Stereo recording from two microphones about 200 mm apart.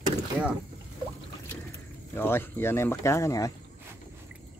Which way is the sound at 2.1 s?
10° left (ahead or behind).